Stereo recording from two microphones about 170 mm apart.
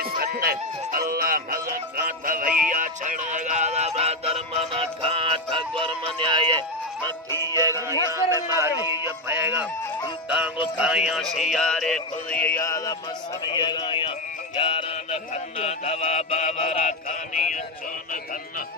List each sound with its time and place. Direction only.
0.0 s music: 65° right (ahead or behind); by 7.1 s 30° right (ahead or behind)
7.2 s music: 15° left (ahead or behind)
7.5 s music: 20° right (ahead or behind); by 12.9 s 20° left (ahead or behind)
13.5 s a sound: 25° left (ahead or behind)
15.6 s mantra: 40° left (ahead or behind)